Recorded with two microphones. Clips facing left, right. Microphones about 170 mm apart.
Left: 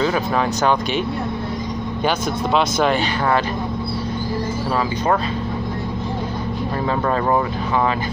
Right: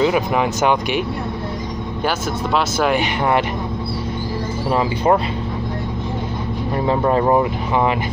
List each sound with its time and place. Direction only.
0.0 s speech: 15° right (ahead or behind)
2.0 s speech: 5° right (ahead or behind)
3.0 s speech: 20° right (ahead or behind)
4.6 s speech: 25° right (ahead or behind)
6.9 s speech: 20° right (ahead or behind)